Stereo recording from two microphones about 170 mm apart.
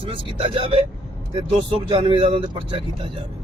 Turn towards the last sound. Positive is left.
turn(degrees=-35)  # may be behind; listen again after turning